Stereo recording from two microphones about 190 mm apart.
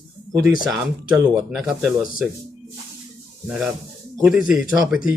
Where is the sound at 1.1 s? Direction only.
Centre (ahead or behind).